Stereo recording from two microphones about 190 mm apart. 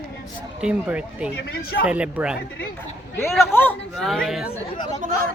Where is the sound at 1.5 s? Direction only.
50° left (ahead or behind).